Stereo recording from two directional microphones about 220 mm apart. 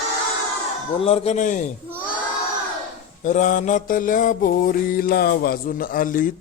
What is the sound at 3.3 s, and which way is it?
Mantra, 35° left (ahead or behind).